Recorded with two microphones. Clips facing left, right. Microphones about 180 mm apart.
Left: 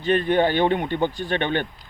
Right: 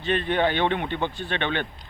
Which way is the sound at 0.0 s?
40° left (ahead or behind).